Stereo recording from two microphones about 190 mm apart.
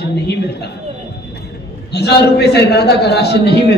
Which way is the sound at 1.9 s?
60° left (ahead or behind).